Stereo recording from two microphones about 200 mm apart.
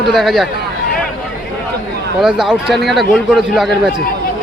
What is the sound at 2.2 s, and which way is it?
Speech, centre (ahead or behind).